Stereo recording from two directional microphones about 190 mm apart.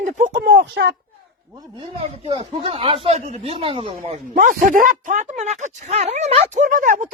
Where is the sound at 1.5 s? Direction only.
20° right (ahead or behind).